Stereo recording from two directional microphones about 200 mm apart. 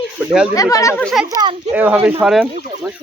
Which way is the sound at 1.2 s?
20° right (ahead or behind).